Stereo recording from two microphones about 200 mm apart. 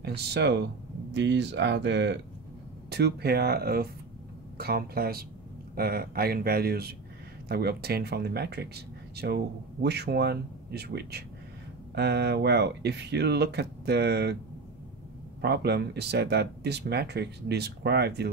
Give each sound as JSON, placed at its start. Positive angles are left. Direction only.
{"t": 0.0, "sound": "speech", "side_deg": -55}
{"t": 15.4, "sound": "speech", "side_deg": -55}